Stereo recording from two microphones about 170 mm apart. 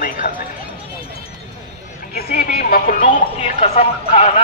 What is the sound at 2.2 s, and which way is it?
Music, 60° left (ahead or behind).